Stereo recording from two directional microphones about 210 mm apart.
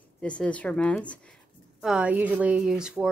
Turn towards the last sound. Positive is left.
turn(degrees=-5)  # may be behind; listen again after turning